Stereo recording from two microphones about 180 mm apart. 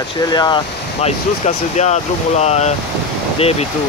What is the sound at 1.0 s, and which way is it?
Speech, 40° left (ahead or behind).